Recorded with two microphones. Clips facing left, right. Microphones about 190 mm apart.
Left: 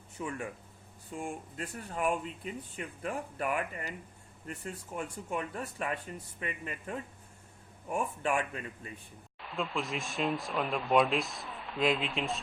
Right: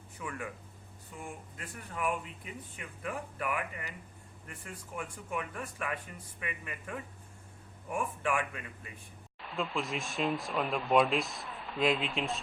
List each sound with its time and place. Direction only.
0.2 s speech: 25° left (ahead or behind)
9.6 s speech: centre (ahead or behind)